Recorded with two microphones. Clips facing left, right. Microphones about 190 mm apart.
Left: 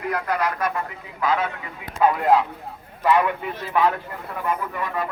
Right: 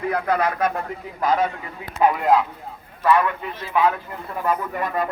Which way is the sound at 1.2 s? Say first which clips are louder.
Right 2 dB; 40° right (ahead or behind).